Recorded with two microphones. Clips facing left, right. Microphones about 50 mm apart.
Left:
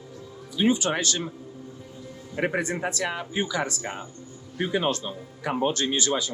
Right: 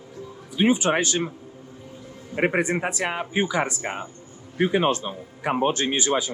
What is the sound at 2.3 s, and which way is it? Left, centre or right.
Speech, right.